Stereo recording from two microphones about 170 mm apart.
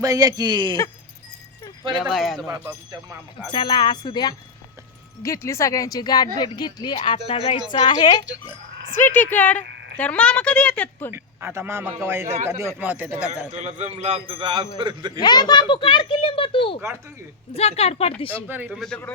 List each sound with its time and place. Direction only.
0.0 s a man's voice: 20° right (ahead or behind)
1.9 s speech: centre (ahead or behind)
2.5 s a man's voice: 20° right (ahead or behind)
3.5 s a woman's voice: 25° left (ahead or behind)
9.0 s speech: 10° left (ahead or behind)
11.1 s speech: 15° right (ahead or behind)
13.5 s a man's voice: 40° right (ahead or behind); by 15.2 s 25° right (ahead or behind)
15.2 s a woman's voice: 25° left (ahead or behind)
18.4 s speech: 10° right (ahead or behind)
18.8 s speech: 5° left (ahead or behind)